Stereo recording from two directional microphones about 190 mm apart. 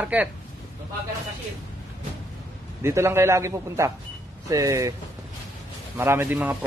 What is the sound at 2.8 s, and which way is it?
A man's voice, 15° right (ahead or behind).